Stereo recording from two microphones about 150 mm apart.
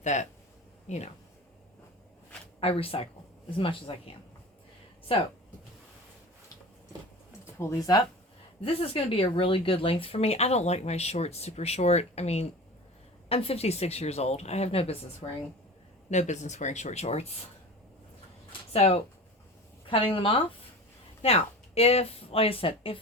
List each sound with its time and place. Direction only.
0.0 s a woman's voice: 50° left (ahead or behind)
2.6 s speech: 40° left (ahead or behind)
8.6 s a woman's voice: 40° left (ahead or behind)
15.2 s speech: 30° left (ahead or behind)
16.0 s a woman's voice: 50° left (ahead or behind)
18.7 s a woman's voice: 45° left (ahead or behind)